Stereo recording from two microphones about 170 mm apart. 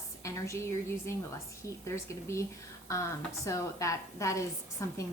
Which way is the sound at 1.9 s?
15° left (ahead or behind).